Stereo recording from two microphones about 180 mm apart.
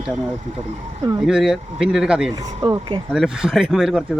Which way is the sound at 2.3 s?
20° right (ahead or behind).